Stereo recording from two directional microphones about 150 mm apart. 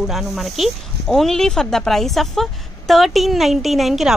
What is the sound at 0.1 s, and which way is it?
Speech, centre (ahead or behind).